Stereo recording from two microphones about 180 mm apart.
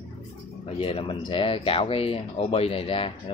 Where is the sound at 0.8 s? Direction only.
30° left (ahead or behind).